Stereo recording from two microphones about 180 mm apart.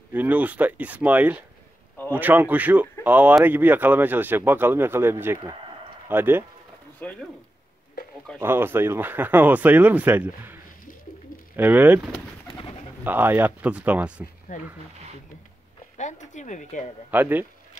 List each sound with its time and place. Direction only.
0.1 s speech: 10° right (ahead or behind)
7.0 s speech: 5° left (ahead or behind)
8.4 s speech: 15° right (ahead or behind)
12.4 s pigeon: 30° left (ahead or behind)
13.0 s speech: 10° right (ahead or behind)
14.5 s speech: 50° left (ahead or behind)
16.0 s speech: 40° left (ahead or behind)
17.1 s speech: 10° right (ahead or behind)